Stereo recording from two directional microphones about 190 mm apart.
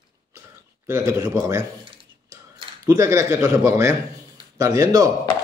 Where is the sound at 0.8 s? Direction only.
15° right (ahead or behind).